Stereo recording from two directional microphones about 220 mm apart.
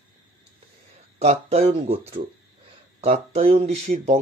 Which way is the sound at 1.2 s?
30° right (ahead or behind).